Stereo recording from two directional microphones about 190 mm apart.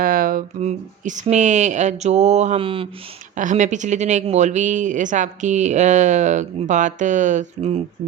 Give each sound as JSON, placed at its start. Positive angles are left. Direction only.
{"t": 0.0, "sound": "speech", "side_deg": -50}
{"t": 3.3, "sound": "speech", "side_deg": -40}